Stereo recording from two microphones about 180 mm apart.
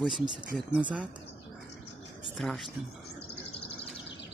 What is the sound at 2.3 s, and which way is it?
Speech, centre (ahead or behind).